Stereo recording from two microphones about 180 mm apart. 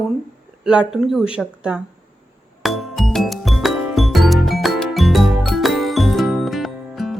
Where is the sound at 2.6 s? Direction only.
Centre (ahead or behind).